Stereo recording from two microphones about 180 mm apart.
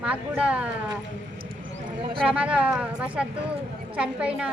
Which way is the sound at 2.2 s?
5° right (ahead or behind).